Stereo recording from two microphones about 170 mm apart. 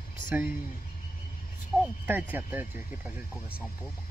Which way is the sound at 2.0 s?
10° right (ahead or behind).